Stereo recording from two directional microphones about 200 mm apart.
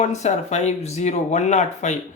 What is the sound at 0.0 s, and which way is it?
Speech, 35° left (ahead or behind).